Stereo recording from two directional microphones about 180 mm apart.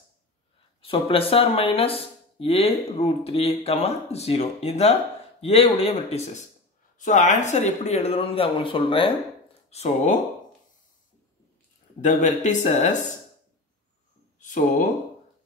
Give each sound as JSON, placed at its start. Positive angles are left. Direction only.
{"t": 0.8, "sound": "speech", "side_deg": 30}
{"t": 9.7, "sound": "speech", "side_deg": 40}
{"t": 12.0, "sound": "speech", "side_deg": 40}
{"t": 14.4, "sound": "speech", "side_deg": 45}